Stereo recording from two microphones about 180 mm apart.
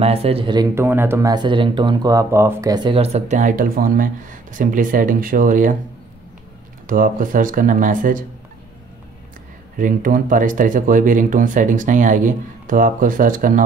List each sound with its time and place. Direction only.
0.0 s speech: 35° right (ahead or behind)
0.7 s speech: 10° right (ahead or behind); by 5.8 s 45° right (ahead or behind)
6.9 s speech: 50° right (ahead or behind)
9.8 s speech: 50° right (ahead or behind)